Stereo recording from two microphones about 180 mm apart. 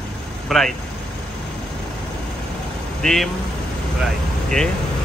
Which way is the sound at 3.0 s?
Centre (ahead or behind).